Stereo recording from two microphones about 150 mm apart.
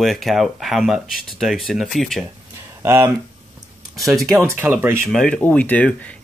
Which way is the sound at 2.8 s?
15° right (ahead or behind).